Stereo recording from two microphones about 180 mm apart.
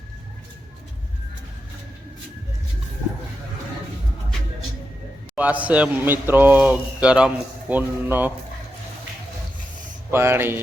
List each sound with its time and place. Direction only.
5.3 s a man's voice: 10° right (ahead or behind)
10.1 s a man's voice: 15° right (ahead or behind)